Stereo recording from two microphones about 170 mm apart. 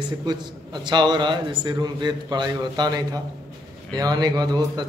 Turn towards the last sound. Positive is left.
turn(degrees=-25)  # may be behind; listen again after turning